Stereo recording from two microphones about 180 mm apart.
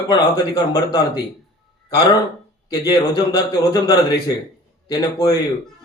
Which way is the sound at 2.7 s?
20° left (ahead or behind).